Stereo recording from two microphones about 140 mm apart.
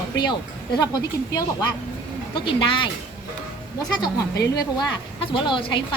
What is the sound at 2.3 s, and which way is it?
Speech, 40° left (ahead or behind).